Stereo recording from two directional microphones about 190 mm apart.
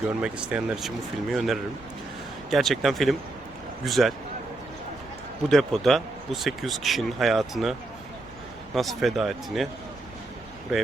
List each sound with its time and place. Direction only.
0.1 s speech: 5° right (ahead or behind)
5.5 s speech: centre (ahead or behind)